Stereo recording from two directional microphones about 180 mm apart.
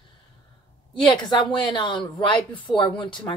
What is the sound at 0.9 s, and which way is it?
Speech, 25° left (ahead or behind).